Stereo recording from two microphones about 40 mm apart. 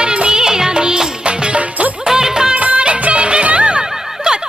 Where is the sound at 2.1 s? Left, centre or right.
Centre.